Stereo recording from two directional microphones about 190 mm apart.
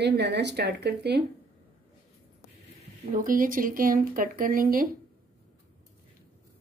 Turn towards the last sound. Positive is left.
turn(degrees=-50)  # may be behind; listen again after turning